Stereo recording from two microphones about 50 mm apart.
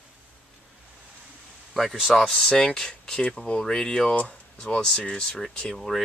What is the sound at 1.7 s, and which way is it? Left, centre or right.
Speech, centre.